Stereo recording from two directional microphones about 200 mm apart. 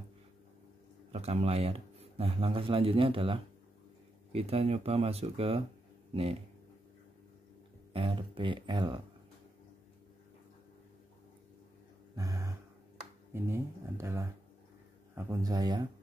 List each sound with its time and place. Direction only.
1.1 s speech: 30° right (ahead or behind)
7.9 s speech: 25° right (ahead or behind)
12.2 s a sound: 15° right (ahead or behind)
13.3 s speech: 15° right (ahead or behind)